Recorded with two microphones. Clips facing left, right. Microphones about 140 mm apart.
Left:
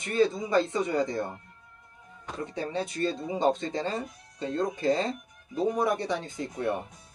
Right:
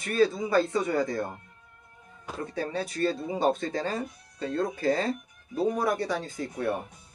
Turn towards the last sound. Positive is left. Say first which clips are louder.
# even
turn(degrees=20)  # may be behind; listen again after turning